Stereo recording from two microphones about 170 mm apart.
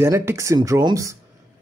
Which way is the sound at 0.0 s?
15° right (ahead or behind).